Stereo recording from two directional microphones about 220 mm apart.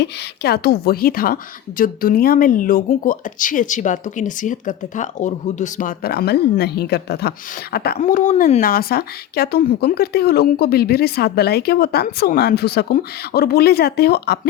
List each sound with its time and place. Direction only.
0.0 s speech: 45° left (ahead or behind)